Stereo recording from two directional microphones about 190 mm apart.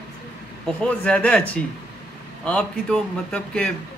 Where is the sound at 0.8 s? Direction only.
5° left (ahead or behind).